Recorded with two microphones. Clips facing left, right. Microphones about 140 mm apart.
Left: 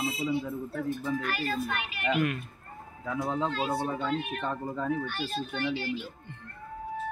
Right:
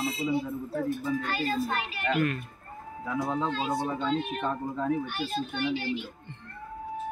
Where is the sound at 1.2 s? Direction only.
25° right (ahead or behind).